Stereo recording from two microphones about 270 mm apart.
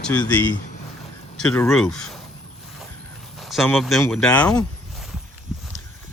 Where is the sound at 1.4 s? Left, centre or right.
Centre.